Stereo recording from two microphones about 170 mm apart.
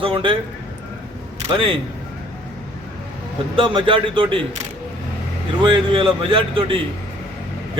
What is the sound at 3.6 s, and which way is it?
Speech, 30° right (ahead or behind).